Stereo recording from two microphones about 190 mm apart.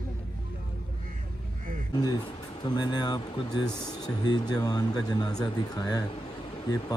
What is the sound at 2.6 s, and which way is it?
Speech, 20° left (ahead or behind).